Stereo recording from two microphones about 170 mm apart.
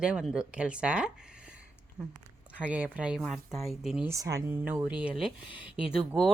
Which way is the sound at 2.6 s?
10° right (ahead or behind).